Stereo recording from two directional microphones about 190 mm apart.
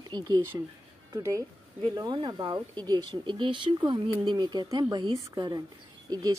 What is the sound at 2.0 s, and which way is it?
Speech, 25° right (ahead or behind).